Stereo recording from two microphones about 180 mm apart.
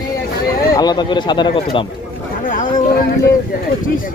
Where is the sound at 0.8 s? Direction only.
25° left (ahead or behind).